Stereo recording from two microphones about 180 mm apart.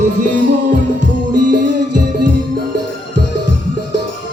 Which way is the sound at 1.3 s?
45° right (ahead or behind).